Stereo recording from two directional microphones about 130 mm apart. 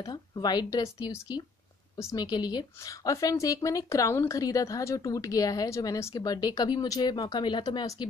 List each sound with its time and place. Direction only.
0.0 s a woman's voice: 30° left (ahead or behind)
2.2 s a woman's voice: 35° left (ahead or behind)